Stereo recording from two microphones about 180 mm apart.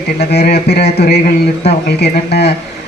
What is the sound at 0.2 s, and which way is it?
Speech, 60° left (ahead or behind).